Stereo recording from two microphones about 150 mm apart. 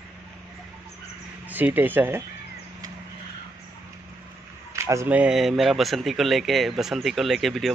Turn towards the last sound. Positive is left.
turn(degrees=0)  # may be behind; listen again after turning